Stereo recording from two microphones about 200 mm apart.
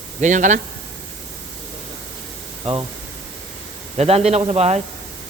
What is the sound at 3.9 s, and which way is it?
Speech, 30° right (ahead or behind).